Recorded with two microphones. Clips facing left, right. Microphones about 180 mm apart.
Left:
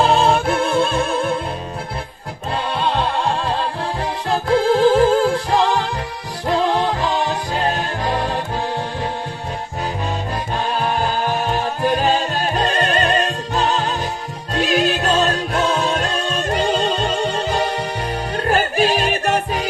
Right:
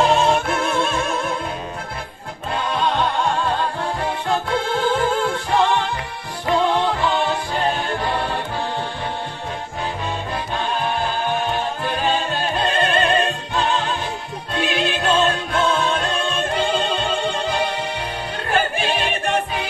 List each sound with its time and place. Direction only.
0.0 s music: 30° left (ahead or behind)
2.5 s music: 30° left (ahead or behind)
11.0 s music: 40° left (ahead or behind)